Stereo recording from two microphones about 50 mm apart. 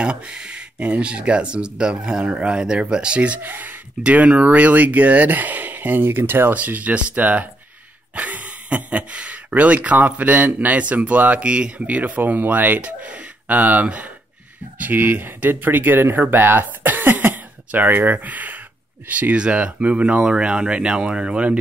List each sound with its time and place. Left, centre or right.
0.0 s speech: right
3.4 s speech: right
4.0 s speech: right
6.5 s speech: right
11.4 s speech: right
11.9 s speech: right
19.3 s speech: right